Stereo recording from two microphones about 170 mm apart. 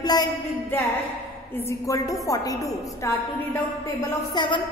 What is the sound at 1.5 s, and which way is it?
A woman's voice, 15° left (ahead or behind).